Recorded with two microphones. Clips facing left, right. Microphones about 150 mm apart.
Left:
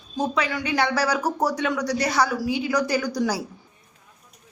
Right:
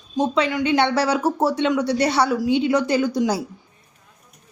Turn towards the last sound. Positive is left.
turn(degrees=-25)  # may be behind; listen again after turning